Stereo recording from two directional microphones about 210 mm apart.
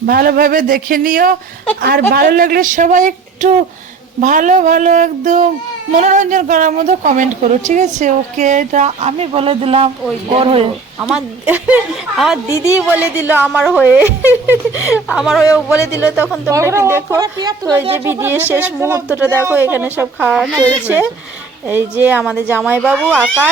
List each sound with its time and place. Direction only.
0.0 s a sound: 45° right (ahead or behind)
2.1 s a woman's voice: 45° right (ahead or behind); by 10.7 s 25° right (ahead or behind)
11.0 s a woman's voice: 10° right (ahead or behind)
15.7 s speech: 15° left (ahead or behind)
16.0 s a woman's voice: 5° right (ahead or behind)